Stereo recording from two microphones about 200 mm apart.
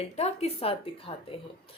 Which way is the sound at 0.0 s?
30° left (ahead or behind).